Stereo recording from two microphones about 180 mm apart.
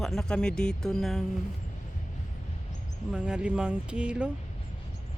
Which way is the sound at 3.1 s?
5° right (ahead or behind).